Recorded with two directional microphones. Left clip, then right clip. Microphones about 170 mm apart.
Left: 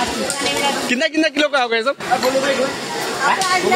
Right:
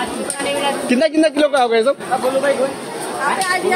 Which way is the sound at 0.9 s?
5° left (ahead or behind).